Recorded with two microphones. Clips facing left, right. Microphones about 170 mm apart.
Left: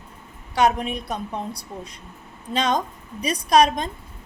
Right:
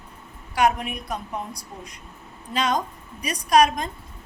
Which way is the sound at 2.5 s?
30° left (ahead or behind).